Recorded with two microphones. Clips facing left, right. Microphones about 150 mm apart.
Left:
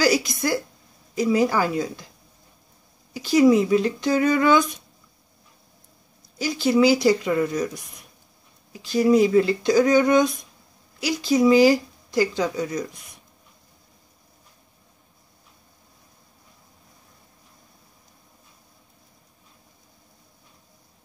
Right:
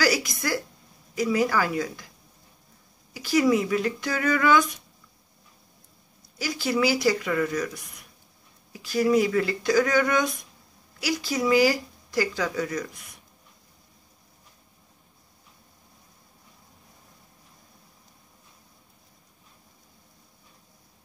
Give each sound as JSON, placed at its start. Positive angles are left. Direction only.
{"t": 0.0, "sound": "speech", "side_deg": 25}
{"t": 3.1, "sound": "speech", "side_deg": 25}
{"t": 6.3, "sound": "speech", "side_deg": 25}